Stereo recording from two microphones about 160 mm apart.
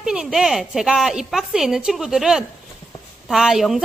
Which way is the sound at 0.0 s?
5° right (ahead or behind).